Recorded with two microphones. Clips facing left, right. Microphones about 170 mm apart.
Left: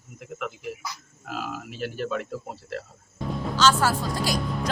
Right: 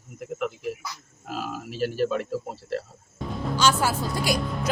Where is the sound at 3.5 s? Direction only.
10° right (ahead or behind).